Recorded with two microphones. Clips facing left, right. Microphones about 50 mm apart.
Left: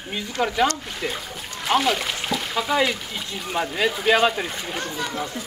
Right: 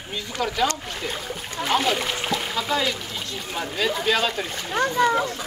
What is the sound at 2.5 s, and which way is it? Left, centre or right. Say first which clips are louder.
Speech: left 6 dB; centre.